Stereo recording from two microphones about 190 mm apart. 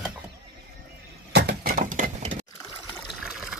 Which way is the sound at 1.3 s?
55° right (ahead or behind).